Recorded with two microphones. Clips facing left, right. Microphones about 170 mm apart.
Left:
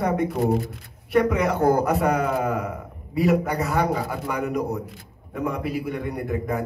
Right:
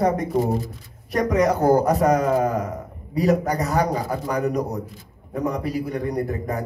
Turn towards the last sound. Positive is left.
turn(degrees=-40)  # may be behind; listen again after turning